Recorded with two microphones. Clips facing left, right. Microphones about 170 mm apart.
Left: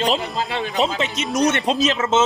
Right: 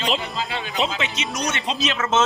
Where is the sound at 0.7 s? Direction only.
45° left (ahead or behind).